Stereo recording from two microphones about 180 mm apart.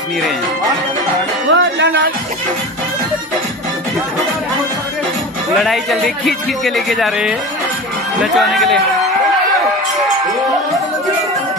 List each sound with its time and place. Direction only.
1.5 s speech: 90° right
5.6 s a man's voice: centre (ahead or behind)